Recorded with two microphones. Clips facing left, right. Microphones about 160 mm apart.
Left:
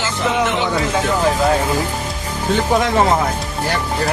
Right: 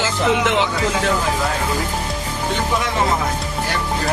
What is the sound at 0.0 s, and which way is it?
Music, 90° right.